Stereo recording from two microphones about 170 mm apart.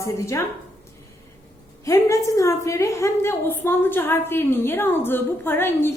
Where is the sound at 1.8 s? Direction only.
20° left (ahead or behind).